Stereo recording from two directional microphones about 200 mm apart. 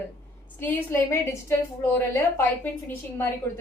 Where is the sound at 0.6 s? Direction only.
10° left (ahead or behind).